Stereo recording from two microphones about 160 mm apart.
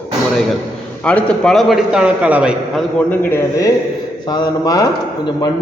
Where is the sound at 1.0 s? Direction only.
10° left (ahead or behind).